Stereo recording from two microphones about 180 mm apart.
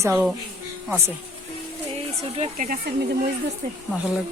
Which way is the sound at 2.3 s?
35° right (ahead or behind).